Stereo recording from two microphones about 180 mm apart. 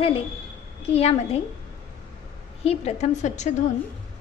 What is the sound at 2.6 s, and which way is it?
Speech, 35° left (ahead or behind).